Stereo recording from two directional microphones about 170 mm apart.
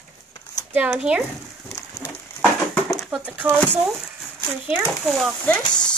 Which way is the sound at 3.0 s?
5° right (ahead or behind).